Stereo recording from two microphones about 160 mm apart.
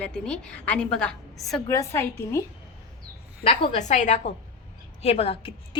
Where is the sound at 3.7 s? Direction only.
50° left (ahead or behind).